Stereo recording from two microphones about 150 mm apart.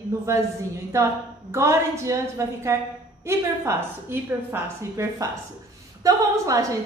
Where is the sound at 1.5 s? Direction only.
20° right (ahead or behind).